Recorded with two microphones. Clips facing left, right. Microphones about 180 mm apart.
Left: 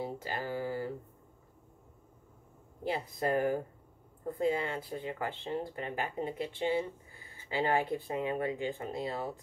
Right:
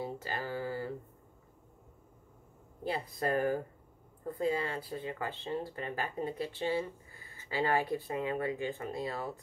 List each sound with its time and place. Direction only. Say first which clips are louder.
0.0 s speech: left 1 dB; 20° left (ahead or behind)
2.9 s speech: left 1 dB; 20° left (ahead or behind)